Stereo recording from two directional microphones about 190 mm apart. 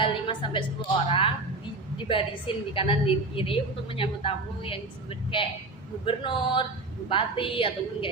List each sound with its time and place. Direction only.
0.0 s a woman's voice: 25° left (ahead or behind)
6.1 s a woman's voice: 25° left (ahead or behind)